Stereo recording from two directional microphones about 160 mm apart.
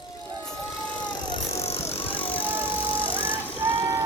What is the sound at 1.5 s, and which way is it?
Vehicle, 40° left (ahead or behind).